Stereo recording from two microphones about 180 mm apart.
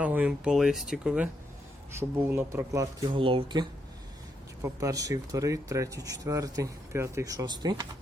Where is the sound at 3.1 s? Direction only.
30° right (ahead or behind).